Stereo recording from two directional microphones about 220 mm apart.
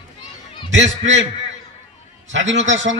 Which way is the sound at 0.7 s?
55° right (ahead or behind).